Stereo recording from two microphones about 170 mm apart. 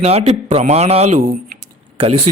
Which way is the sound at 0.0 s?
40° right (ahead or behind).